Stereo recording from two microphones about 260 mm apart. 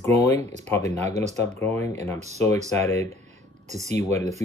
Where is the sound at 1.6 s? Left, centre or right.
Centre.